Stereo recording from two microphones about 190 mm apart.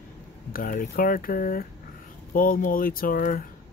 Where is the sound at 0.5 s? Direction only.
45° left (ahead or behind).